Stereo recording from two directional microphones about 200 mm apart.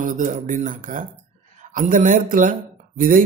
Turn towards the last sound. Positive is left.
turn(degrees=-45)  # may be behind; listen again after turning